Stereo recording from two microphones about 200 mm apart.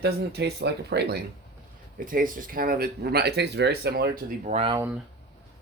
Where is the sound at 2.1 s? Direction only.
45° right (ahead or behind).